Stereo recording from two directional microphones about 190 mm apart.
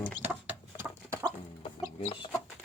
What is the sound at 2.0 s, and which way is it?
Speech, 35° left (ahead or behind).